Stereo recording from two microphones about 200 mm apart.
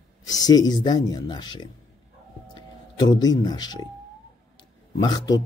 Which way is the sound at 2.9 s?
20° left (ahead or behind).